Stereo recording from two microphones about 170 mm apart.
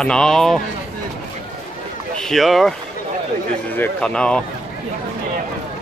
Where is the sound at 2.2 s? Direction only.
Centre (ahead or behind).